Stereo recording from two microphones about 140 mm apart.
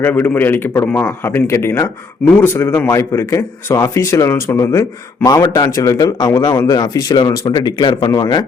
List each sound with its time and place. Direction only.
0.0 s a man's voice: 15° left (ahead or behind); by 8.4 s 30° left (ahead or behind)